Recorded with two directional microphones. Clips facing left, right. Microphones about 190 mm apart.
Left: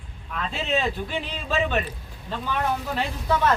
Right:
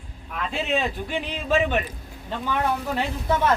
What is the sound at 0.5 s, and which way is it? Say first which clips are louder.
A man's voice: even; 15° right (ahead or behind).